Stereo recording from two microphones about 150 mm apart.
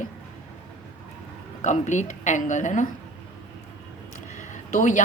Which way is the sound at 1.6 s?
55° left (ahead or behind).